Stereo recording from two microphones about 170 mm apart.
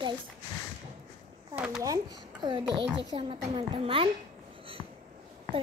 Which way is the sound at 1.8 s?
20° right (ahead or behind).